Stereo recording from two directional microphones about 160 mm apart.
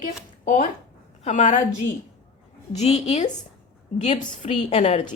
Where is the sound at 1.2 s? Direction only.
50° left (ahead or behind).